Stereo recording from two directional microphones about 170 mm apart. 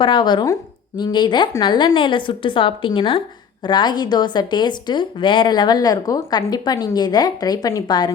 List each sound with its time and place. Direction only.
0.0 s speech: 25° left (ahead or behind)